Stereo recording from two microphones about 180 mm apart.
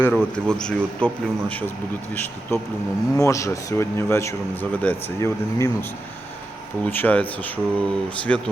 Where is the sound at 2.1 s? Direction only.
10° left (ahead or behind).